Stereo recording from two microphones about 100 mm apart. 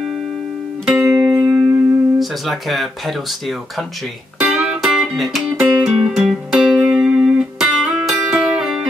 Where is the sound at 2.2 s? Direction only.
Centre (ahead or behind).